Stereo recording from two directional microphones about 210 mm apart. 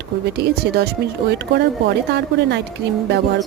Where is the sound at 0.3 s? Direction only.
50° right (ahead or behind).